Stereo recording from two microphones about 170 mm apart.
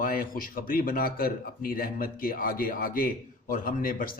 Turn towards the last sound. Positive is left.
turn(degrees=55)  # may be behind; listen again after turning